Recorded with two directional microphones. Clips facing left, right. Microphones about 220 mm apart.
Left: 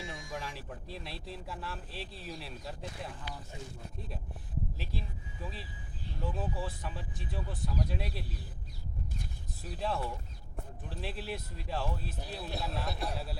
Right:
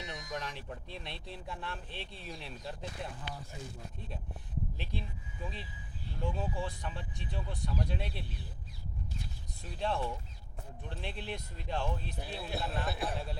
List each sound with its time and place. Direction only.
0.0 s a sound: 25° left (ahead or behind)
0.3 s speech: 5° left (ahead or behind)
4.8 s speech: centre (ahead or behind)
6.2 s speech: 5° left (ahead or behind)
9.7 s speech: 5° left (ahead or behind)